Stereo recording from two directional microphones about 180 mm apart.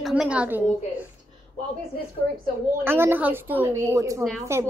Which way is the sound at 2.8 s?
10° right (ahead or behind).